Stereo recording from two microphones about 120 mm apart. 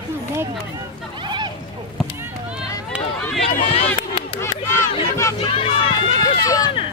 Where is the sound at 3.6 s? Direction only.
60° left (ahead or behind).